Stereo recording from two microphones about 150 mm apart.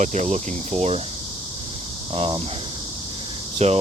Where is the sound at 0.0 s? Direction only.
55° right (ahead or behind).